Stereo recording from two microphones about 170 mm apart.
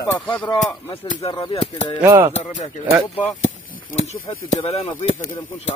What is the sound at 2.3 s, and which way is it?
Speech, 40° left (ahead or behind).